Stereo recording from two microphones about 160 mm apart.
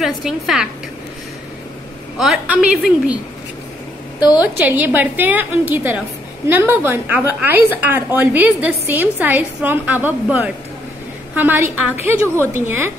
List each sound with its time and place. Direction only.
0.0 s a woman's voice: centre (ahead or behind)
2.1 s a woman's voice: 5° right (ahead or behind)
4.2 s a woman's voice: 25° left (ahead or behind)
4.6 s a woman's voice: 10° right (ahead or behind)